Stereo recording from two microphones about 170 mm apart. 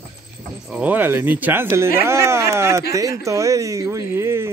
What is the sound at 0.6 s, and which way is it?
Speech, 10° right (ahead or behind).